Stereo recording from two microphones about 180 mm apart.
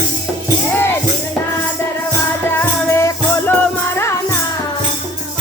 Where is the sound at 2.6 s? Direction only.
15° left (ahead or behind).